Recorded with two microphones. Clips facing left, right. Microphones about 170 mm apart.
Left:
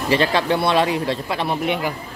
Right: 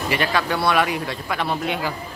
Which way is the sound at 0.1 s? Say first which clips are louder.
Left 5 dB; 30° left (ahead or behind).